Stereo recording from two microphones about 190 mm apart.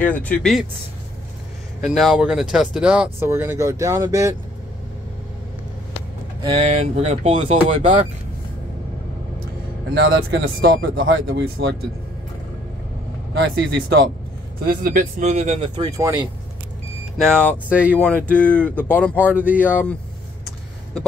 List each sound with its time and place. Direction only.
0.0 s speech: 10° left (ahead or behind)
1.8 s speech: centre (ahead or behind); by 4.4 s 15° right (ahead or behind)
6.4 s speech: 30° right (ahead or behind)
9.9 s speech: 70° right (ahead or behind); by 11.7 s 85° right
13.3 s speech: 65° right (ahead or behind)
14.6 s speech: 50° right (ahead or behind); by 15.9 s 30° right (ahead or behind)
16.0 s speech: 15° right (ahead or behind)
17.2 s speech: 5° left (ahead or behind)
17.6 s speech: 5° right (ahead or behind)
17.9 s speech: 10° left (ahead or behind)
19.2 s speech: 10° right (ahead or behind)
19.6 s speech: 10° left (ahead or behind)